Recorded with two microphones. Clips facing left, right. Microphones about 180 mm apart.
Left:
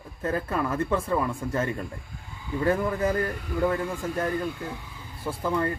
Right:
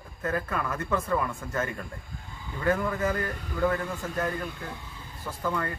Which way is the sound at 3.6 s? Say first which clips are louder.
Left 1 dB; 15° left (ahead or behind).